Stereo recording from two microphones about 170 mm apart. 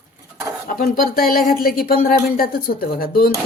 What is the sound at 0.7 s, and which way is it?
A woman's voice, 55° left (ahead or behind).